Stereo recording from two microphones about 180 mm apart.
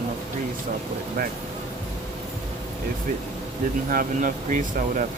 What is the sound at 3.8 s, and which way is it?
Speech, 50° right (ahead or behind).